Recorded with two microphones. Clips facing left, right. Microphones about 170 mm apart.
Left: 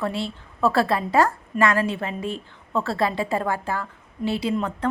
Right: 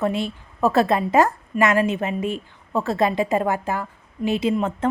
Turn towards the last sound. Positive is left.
turn(degrees=-20)  # may be behind; listen again after turning